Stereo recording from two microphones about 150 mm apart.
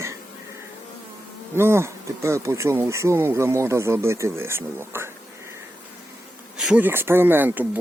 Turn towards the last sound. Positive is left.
turn(degrees=-10)  # may be behind; listen again after turning